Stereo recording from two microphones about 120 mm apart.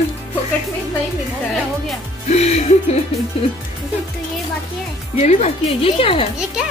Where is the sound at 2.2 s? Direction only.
65° left (ahead or behind).